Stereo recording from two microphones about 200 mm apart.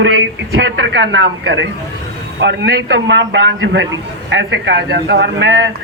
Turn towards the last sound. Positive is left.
turn(degrees=-60)  # may be behind; listen again after turning